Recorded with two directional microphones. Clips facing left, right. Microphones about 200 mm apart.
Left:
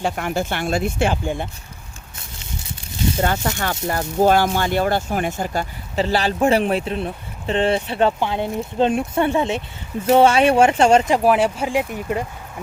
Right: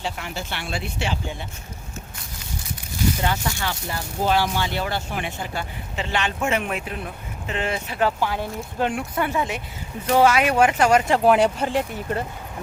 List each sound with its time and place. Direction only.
0.0 s speech: 50° left (ahead or behind)
3.2 s speech: 50° left (ahead or behind); by 11.1 s 25° left (ahead or behind)
11.3 s speech: 5° left (ahead or behind)